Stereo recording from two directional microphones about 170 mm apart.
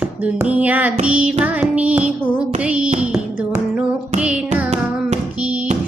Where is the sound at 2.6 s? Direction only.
5° right (ahead or behind).